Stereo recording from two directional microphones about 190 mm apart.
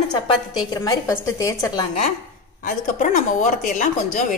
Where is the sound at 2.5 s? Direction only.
45° left (ahead or behind).